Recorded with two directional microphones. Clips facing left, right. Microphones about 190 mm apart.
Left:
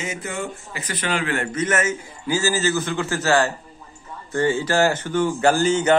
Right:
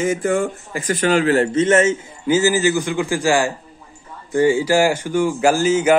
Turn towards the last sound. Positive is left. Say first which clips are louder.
# right 2 dB
turn(degrees=-10)  # may be behind; listen again after turning